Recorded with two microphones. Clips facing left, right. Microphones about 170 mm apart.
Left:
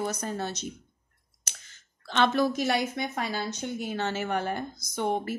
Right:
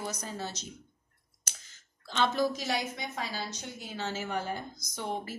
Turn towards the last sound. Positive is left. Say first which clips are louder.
# left 7 dB
turn(degrees=60)  # may be behind; listen again after turning